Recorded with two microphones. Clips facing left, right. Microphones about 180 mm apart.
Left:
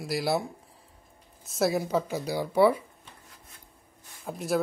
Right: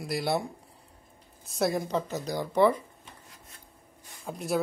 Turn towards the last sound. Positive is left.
turn(degrees=0)  # may be behind; listen again after turning